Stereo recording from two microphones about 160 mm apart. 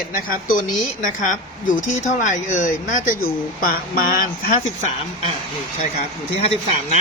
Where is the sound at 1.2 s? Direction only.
55° left (ahead or behind).